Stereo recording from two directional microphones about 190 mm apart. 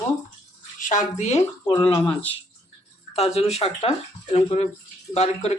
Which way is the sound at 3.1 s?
35° left (ahead or behind).